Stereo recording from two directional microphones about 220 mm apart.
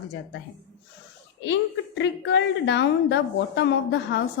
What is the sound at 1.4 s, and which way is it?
A woman's voice, 55° left (ahead or behind).